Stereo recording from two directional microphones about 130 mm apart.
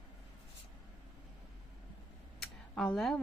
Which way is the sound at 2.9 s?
Centre (ahead or behind).